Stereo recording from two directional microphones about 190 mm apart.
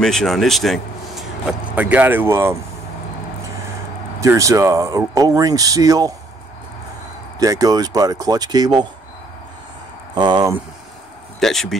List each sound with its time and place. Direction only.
0.0 s speech: centre (ahead or behind); by 2.6 s 15° right (ahead or behind)
4.2 s speech: 15° right (ahead or behind)
7.3 s speech: 20° right (ahead or behind)
10.1 s speech: 20° right (ahead or behind)
11.3 s speech: centre (ahead or behind)